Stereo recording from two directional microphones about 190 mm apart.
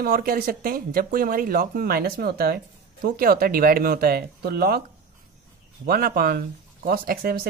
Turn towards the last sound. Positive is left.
turn(degrees=-50)  # may be behind; listen again after turning